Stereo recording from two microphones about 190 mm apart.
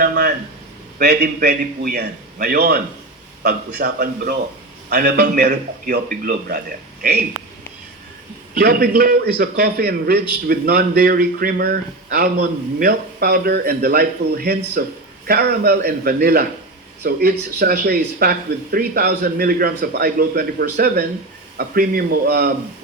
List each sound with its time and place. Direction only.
0.0 s a man's voice: 55° right (ahead or behind)
8.5 s a man's voice: 55° right (ahead or behind)